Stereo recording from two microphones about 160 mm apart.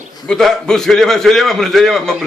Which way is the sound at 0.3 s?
5° left (ahead or behind).